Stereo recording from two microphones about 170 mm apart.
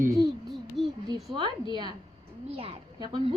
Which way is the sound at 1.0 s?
25° right (ahead or behind).